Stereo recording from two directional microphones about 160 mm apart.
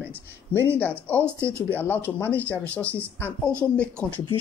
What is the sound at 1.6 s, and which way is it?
Speech, 10° left (ahead or behind).